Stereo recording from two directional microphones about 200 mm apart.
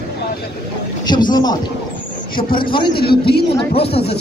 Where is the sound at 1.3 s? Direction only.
20° left (ahead or behind).